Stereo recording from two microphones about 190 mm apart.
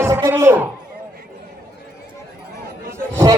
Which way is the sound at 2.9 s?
15° right (ahead or behind).